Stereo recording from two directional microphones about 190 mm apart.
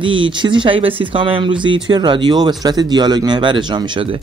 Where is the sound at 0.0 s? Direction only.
25° right (ahead or behind).